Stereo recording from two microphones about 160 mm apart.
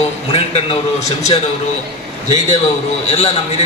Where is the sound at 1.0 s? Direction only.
40° left (ahead or behind).